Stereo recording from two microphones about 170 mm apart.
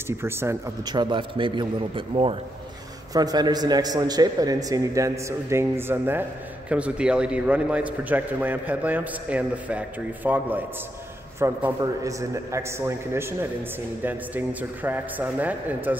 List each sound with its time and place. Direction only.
0.2 s a man's voice: 15° right (ahead or behind)
0.9 s a man's voice: 25° right (ahead or behind); by 16.0 s 10° right (ahead or behind)